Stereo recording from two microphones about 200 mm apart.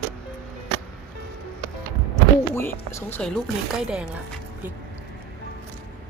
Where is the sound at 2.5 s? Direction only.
10° left (ahead or behind); by 4.0 s 5° right (ahead or behind).